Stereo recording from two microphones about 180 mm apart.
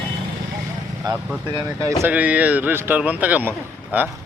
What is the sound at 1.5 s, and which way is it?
Speech, 25° right (ahead or behind).